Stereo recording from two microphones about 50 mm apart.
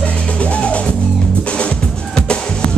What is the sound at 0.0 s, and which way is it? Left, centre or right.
Music, left.